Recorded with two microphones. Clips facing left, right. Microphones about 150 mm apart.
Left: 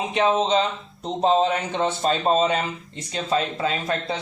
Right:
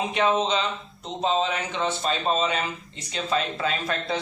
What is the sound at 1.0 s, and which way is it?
Speech, 45° left (ahead or behind).